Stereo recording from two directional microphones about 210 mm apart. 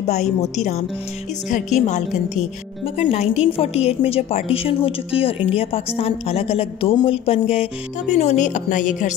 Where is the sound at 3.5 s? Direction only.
30° left (ahead or behind).